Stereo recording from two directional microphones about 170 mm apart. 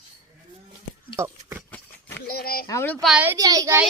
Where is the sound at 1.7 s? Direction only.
10° left (ahead or behind).